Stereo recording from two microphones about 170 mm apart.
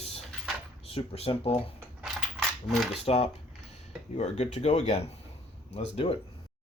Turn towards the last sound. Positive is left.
turn(degrees=35)  # may be behind; listen again after turning